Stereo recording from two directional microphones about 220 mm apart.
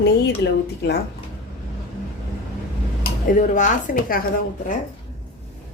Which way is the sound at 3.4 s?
35° left (ahead or behind).